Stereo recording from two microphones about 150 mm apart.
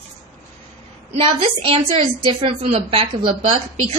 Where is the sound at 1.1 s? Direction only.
40° right (ahead or behind).